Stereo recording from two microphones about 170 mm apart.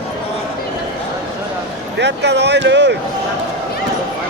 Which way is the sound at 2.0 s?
90° right.